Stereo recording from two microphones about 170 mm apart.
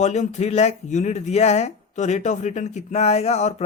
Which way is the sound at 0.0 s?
45° left (ahead or behind).